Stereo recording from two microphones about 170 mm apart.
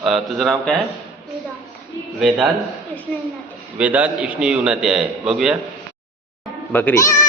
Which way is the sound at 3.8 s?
10° right (ahead or behind).